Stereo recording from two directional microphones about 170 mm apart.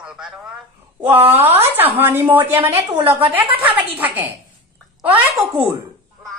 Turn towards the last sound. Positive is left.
turn(degrees=-10)  # may be behind; listen again after turning